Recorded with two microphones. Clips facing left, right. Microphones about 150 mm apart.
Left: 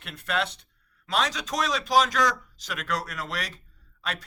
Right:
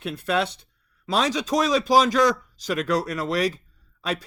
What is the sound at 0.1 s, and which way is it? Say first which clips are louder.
Speech: right 5 dB; 35° right (ahead or behind).